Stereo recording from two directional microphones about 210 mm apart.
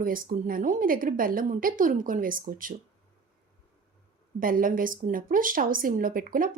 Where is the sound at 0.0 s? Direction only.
40° right (ahead or behind).